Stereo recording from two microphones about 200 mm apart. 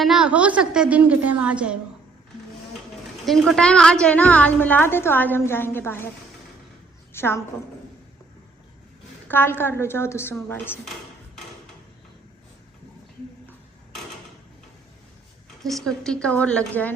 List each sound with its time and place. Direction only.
0.0 s a woman's voice: centre (ahead or behind)
3.2 s a woman's voice: centre (ahead or behind)
7.1 s a woman's voice: 10° left (ahead or behind)
9.2 s a woman's voice: 10° left (ahead or behind)
15.6 s a woman's voice: centre (ahead or behind)